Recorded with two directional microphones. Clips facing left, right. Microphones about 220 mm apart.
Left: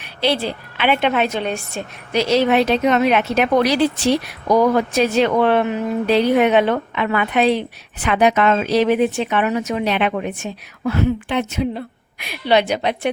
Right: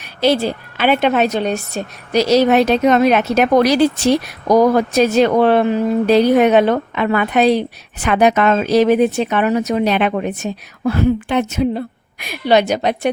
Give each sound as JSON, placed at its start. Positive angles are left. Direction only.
{"t": 0.0, "sound": "a woman's voice", "side_deg": -45}